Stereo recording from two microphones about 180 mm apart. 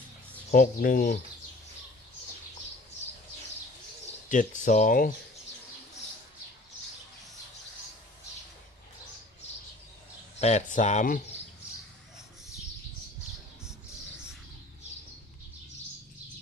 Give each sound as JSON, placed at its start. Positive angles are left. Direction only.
{"t": 0.5, "sound": "speech", "side_deg": 50}
{"t": 4.3, "sound": "speech", "side_deg": 45}
{"t": 10.4, "sound": "speech", "side_deg": 40}